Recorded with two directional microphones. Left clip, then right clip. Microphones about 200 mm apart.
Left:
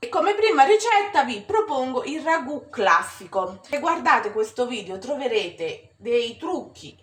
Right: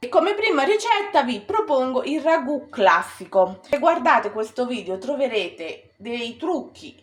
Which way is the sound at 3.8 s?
45° right (ahead or behind).